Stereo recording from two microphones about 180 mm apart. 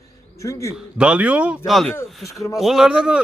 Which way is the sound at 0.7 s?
5° right (ahead or behind).